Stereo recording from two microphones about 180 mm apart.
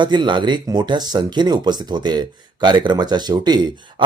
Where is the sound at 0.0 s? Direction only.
25° right (ahead or behind).